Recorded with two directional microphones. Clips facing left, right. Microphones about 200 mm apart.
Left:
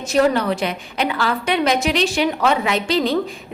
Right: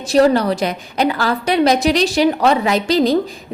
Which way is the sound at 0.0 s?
35° right (ahead or behind).